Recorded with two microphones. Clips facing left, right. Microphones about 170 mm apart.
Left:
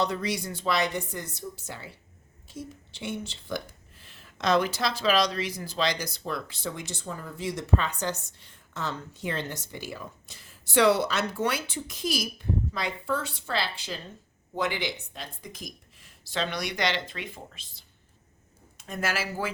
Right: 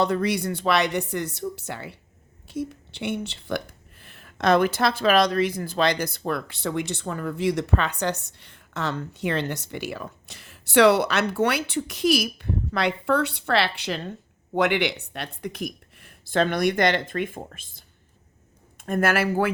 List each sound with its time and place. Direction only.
0.0 s speech: 55° right (ahead or behind)